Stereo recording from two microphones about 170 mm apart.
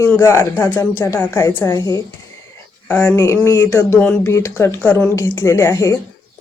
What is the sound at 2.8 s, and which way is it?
Speech, 10° left (ahead or behind).